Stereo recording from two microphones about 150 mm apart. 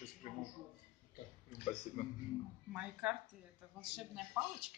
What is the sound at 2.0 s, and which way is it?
Speech, 60° left (ahead or behind).